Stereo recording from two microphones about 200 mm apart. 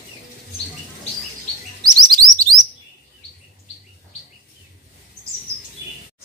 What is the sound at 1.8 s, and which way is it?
Chirp, 20° right (ahead or behind).